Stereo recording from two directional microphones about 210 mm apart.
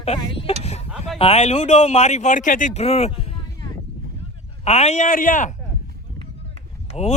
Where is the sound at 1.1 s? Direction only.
30° left (ahead or behind).